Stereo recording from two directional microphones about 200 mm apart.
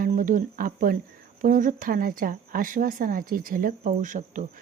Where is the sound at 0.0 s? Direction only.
40° right (ahead or behind).